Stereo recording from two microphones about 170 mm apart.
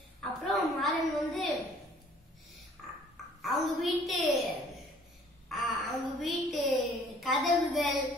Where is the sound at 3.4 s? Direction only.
Centre (ahead or behind).